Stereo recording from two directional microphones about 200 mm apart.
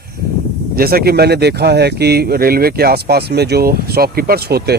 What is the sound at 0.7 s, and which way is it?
Speech, 50° right (ahead or behind).